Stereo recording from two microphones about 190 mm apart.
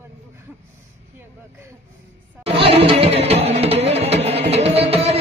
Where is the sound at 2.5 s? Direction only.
30° right (ahead or behind).